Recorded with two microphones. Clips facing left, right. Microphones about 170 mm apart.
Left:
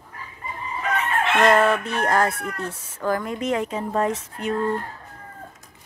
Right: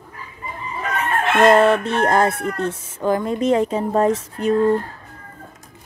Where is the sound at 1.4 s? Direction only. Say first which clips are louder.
Right 6 dB; 30° right (ahead or behind).